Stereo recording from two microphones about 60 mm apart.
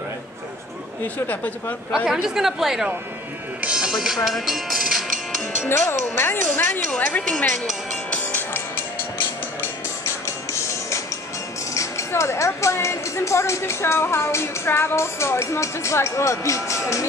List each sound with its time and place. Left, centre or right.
1.0 s speech: left
2.2 s speech: centre
5.7 s speech: left
8.1 s music: left
11.7 s speech: left